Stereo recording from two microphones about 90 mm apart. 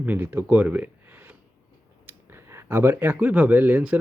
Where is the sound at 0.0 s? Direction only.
20° right (ahead or behind).